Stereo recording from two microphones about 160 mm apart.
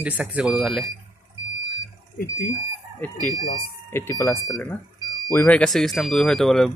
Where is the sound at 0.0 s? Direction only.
5° right (ahead or behind).